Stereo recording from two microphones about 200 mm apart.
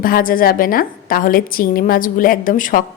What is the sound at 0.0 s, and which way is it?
A woman's voice, 45° left (ahead or behind).